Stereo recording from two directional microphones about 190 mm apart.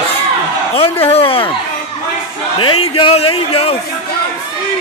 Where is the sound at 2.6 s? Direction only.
25° left (ahead or behind).